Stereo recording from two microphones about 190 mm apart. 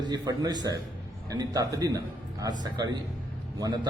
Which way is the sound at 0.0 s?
20° right (ahead or behind).